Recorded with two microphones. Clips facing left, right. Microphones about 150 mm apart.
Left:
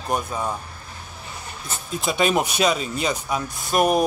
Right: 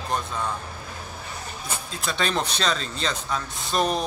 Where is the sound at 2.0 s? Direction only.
10° left (ahead or behind).